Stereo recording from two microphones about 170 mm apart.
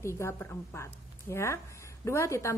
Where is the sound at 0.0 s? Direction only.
15° left (ahead or behind).